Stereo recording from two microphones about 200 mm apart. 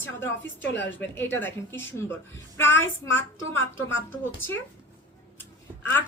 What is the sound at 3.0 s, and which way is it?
Speech, 75° left (ahead or behind).